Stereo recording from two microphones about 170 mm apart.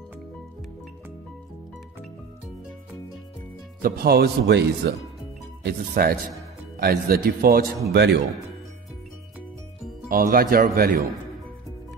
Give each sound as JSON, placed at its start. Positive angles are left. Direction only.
{"t": 3.8, "sound": "speech", "side_deg": -65}
{"t": 7.9, "sound": "speech", "side_deg": -90}
{"t": 10.0, "sound": "speech", "side_deg": -55}